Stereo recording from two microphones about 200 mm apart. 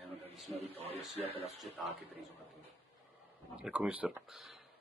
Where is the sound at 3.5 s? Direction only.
5° right (ahead or behind).